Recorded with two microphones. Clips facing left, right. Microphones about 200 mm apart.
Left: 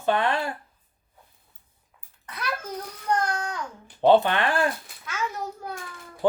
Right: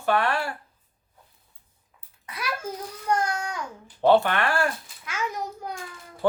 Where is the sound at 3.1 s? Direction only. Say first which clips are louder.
Even; 10° right (ahead or behind).